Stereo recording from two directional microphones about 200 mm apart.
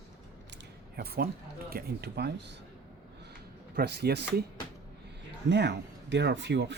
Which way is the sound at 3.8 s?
55° right (ahead or behind).